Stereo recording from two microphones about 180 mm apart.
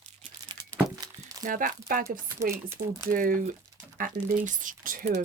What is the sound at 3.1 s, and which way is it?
Speech, 50° right (ahead or behind).